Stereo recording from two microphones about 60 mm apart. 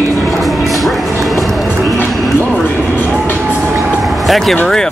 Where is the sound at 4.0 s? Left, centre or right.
Centre.